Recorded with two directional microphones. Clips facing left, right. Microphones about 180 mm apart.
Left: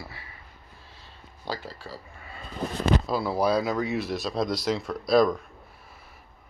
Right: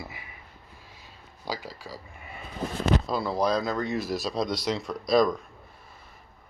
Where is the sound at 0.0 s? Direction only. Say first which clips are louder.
Right 1 dB; 15° right (ahead or behind).